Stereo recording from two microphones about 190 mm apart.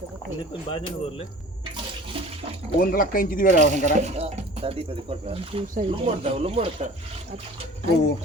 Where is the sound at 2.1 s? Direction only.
30° right (ahead or behind).